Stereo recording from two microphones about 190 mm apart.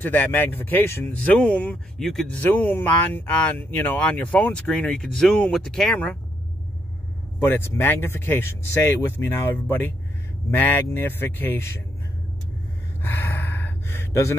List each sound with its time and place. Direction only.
0.0 s speech: 10° left (ahead or behind)
7.3 s speech: 10° left (ahead or behind)
13.0 s gasp: 10° left (ahead or behind)